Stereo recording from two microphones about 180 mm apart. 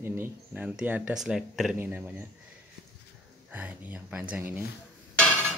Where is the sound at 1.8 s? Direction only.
10° right (ahead or behind).